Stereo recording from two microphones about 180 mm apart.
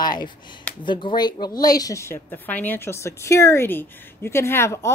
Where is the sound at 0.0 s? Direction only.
25° left (ahead or behind).